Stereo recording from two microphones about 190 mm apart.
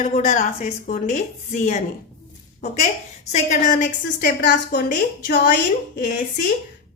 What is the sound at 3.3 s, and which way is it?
Speech, 40° left (ahead or behind).